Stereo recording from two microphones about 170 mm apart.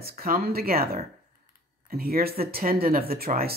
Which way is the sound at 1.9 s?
60° right (ahead or behind).